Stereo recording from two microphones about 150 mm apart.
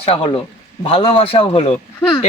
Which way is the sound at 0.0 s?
40° left (ahead or behind).